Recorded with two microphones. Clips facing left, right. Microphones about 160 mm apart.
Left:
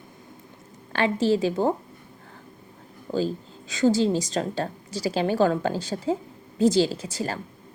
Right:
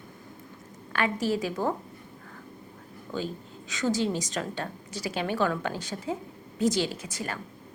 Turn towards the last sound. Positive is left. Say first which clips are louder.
# left 5 dB
turn(degrees=30)  # may be behind; listen again after turning